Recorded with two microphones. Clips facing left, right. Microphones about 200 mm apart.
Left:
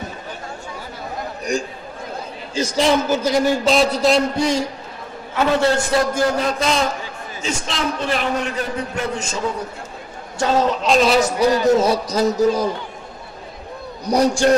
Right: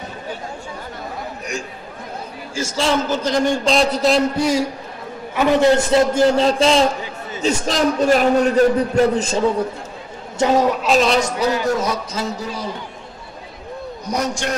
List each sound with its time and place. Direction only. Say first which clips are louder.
2.5 s a man's voice: left 2 dB; 15° left (ahead or behind); by 4.6 s 5° right (ahead or behind)
5.3 s a man's voice: right 3 dB; 15° right (ahead or behind)
7.4 s a man's voice: right 6 dB; 40° right (ahead or behind)
10.4 s a man's voice: right 2 dB; 15° right (ahead or behind); by 12.6 s 40° left (ahead or behind)
14.0 s a man's voice: left 7 dB; 35° left (ahead or behind)